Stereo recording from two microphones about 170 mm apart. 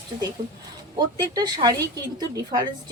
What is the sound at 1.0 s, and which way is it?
Speech, 25° right (ahead or behind).